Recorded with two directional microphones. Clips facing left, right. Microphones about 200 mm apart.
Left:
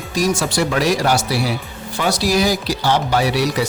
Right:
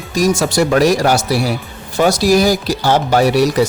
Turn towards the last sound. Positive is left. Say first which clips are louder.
# right 6 dB
turn(degrees=-45)  # may be behind; listen again after turning